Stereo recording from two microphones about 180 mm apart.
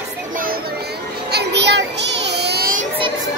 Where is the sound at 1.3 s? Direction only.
70° right (ahead or behind).